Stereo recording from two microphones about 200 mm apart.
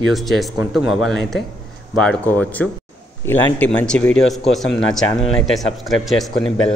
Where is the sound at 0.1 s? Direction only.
Centre (ahead or behind).